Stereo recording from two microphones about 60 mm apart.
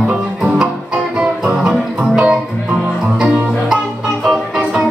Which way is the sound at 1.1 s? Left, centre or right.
Centre.